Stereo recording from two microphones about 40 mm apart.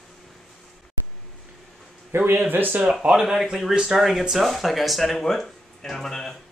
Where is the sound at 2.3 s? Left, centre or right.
Right.